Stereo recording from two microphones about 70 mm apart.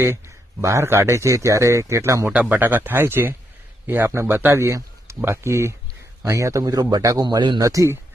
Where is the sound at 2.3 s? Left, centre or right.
Right.